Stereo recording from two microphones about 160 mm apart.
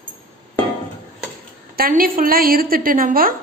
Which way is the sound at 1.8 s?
65° right (ahead or behind).